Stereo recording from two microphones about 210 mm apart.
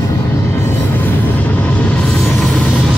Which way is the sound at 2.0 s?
5° left (ahead or behind).